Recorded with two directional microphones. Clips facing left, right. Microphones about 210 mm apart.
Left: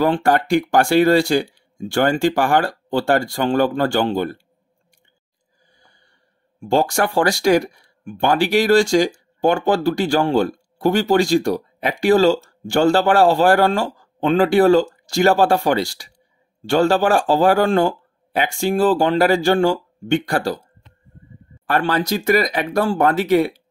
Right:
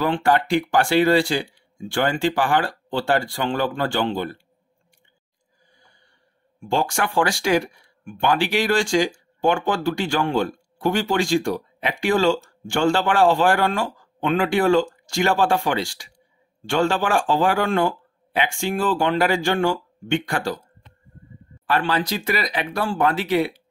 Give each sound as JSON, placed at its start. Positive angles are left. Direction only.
{"t": 0.0, "sound": "speech", "side_deg": 45}
{"t": 6.6, "sound": "speech", "side_deg": 40}
{"t": 21.6, "sound": "speech", "side_deg": 45}